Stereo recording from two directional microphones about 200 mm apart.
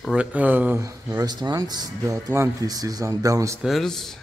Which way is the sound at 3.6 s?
Centre (ahead or behind).